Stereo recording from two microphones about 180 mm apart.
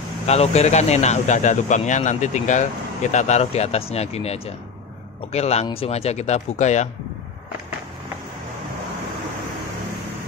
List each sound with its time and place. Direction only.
0.3 s speech: 35° left (ahead or behind)